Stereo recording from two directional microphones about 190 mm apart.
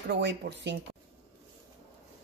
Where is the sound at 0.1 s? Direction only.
65° right (ahead or behind).